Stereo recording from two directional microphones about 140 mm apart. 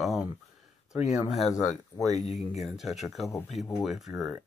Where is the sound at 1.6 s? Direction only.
20° left (ahead or behind).